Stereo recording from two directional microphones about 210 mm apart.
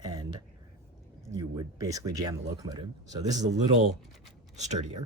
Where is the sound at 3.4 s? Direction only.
35° right (ahead or behind).